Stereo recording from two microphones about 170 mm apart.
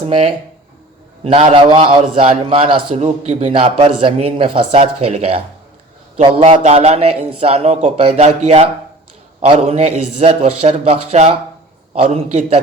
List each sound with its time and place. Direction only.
0.0 s a man's voice: 30° right (ahead or behind)